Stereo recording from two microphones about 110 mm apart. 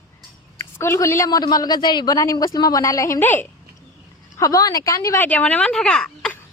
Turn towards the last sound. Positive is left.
turn(degrees=5)  # may be behind; listen again after turning